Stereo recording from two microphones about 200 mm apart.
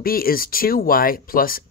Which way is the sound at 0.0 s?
45° left (ahead or behind).